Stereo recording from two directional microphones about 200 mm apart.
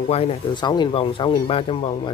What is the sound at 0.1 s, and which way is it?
Speech, 30° left (ahead or behind).